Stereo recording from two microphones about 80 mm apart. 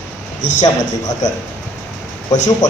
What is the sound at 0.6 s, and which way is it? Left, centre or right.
Speech, left.